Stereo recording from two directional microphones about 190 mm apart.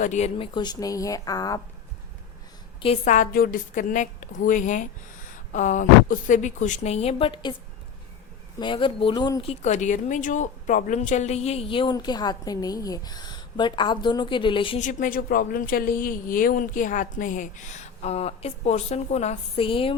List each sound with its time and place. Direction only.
0.0 s a woman's voice: 35° left (ahead or behind)
0.5 s speech: 20° left (ahead or behind)
2.8 s a woman's voice: 35° left (ahead or behind)
8.5 s speech: 25° left (ahead or behind)
14.8 s a woman's voice: 40° left (ahead or behind)